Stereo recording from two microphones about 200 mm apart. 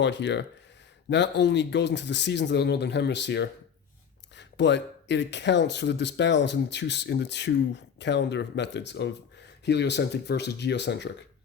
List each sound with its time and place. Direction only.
0.0 s speech: 60° left (ahead or behind)